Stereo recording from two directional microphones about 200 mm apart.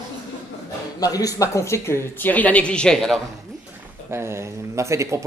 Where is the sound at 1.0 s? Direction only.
20° left (ahead or behind); by 3.1 s centre (ahead or behind).